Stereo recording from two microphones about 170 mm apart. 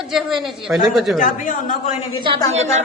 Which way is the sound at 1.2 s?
50° left (ahead or behind).